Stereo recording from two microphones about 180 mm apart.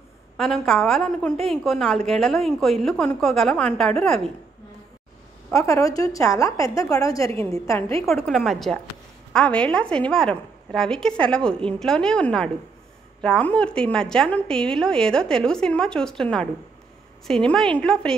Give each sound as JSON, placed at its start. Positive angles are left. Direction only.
{"t": 0.4, "sound": "a woman's voice", "side_deg": 0}
{"t": 5.5, "sound": "a woman's voice", "side_deg": 15}
{"t": 8.0, "sound": "a woman's voice", "side_deg": 0}